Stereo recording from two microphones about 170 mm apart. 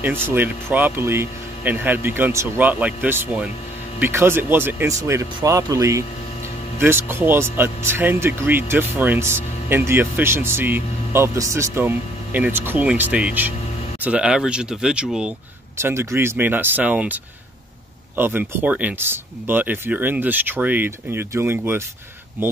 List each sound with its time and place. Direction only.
0.3 s speech: 10° right (ahead or behind)
15.8 s speech: 15° right (ahead or behind)